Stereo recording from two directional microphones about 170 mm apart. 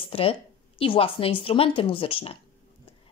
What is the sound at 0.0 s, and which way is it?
A woman's voice, 35° left (ahead or behind).